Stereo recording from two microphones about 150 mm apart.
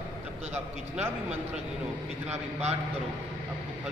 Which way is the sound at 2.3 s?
45° right (ahead or behind).